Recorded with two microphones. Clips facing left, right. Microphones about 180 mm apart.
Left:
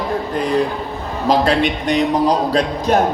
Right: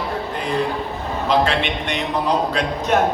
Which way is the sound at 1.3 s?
40° left (ahead or behind).